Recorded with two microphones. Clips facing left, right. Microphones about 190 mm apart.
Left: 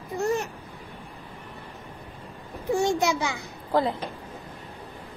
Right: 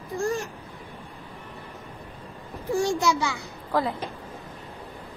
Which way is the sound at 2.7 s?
25° left (ahead or behind).